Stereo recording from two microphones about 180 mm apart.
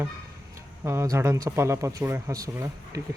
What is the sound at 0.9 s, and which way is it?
Speech, 15° right (ahead or behind).